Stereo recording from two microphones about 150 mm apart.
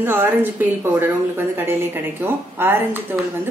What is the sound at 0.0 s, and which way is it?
A woman's voice, 15° right (ahead or behind).